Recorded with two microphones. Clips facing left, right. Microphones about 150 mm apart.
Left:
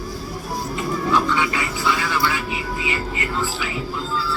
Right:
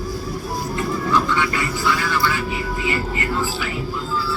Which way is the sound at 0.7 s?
15° left (ahead or behind).